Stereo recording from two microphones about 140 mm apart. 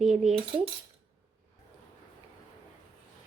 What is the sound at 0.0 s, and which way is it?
Speech, 5° right (ahead or behind).